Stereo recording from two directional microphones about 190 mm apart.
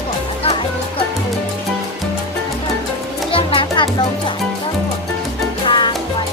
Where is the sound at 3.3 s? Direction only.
30° left (ahead or behind).